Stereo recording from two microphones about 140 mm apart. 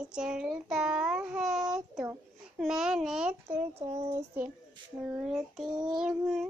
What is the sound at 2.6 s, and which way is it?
Babbling, 5° right (ahead or behind).